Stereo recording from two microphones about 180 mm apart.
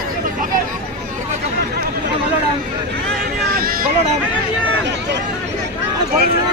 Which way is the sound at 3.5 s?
55° right (ahead or behind).